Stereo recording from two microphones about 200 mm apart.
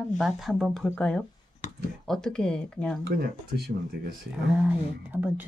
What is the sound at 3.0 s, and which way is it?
Speech, 50° right (ahead or behind).